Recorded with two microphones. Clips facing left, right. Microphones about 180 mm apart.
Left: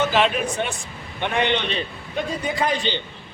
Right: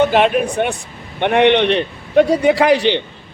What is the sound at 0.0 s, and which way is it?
A man's voice, 55° right (ahead or behind).